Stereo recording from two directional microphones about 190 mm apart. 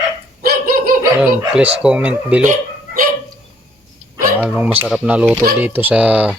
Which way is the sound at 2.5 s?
45° right (ahead or behind).